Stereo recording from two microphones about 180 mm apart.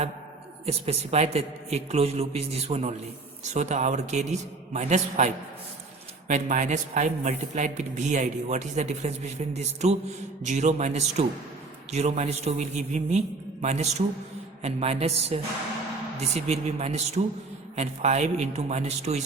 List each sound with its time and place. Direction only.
0.6 s a man's voice: 35° right (ahead or behind)